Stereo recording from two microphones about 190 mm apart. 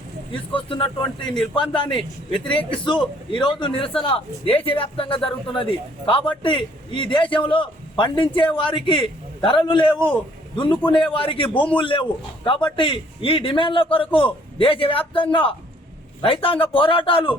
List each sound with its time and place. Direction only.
0.3 s a man's voice: 25° left (ahead or behind)